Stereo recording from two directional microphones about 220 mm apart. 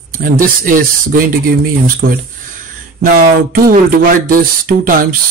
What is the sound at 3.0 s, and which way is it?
Speech, 40° right (ahead or behind).